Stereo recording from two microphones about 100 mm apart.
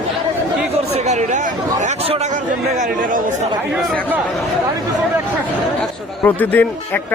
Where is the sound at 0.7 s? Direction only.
90° right.